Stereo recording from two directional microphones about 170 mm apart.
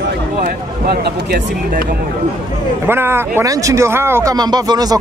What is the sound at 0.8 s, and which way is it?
Speech, 70° right (ahead or behind).